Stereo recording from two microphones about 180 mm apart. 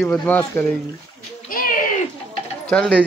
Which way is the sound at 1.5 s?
50° left (ahead or behind).